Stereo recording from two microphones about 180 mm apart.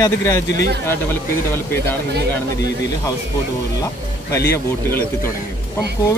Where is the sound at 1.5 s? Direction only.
10° left (ahead or behind).